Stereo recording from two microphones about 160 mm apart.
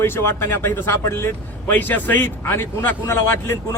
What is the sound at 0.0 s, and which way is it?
Speech, 15° left (ahead or behind).